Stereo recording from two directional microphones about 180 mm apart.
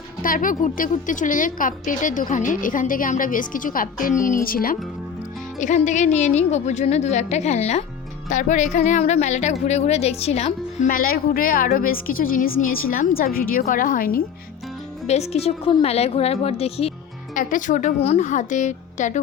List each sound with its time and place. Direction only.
0.2 s a woman's voice: 50° left (ahead or behind)
15.0 s a woman's voice: 35° left (ahead or behind)
17.3 s a woman's voice: 45° left (ahead or behind)